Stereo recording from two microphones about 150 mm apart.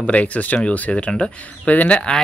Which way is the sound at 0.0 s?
10° left (ahead or behind).